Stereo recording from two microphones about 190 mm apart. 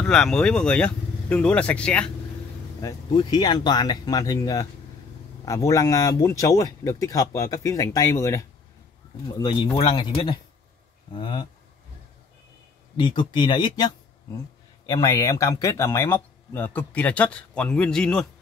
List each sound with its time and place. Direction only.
0.0 s speech: 5° left (ahead or behind)
2.8 s speech: 20° left (ahead or behind)
12.9 s speech: 25° left (ahead or behind); by 18.2 s 5° left (ahead or behind)